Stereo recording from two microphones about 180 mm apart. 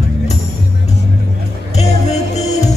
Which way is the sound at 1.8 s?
40° left (ahead or behind).